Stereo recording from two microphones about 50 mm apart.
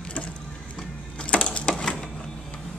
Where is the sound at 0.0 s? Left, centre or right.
Left.